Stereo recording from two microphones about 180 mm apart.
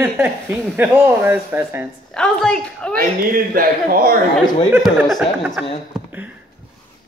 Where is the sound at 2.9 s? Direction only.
50° right (ahead or behind).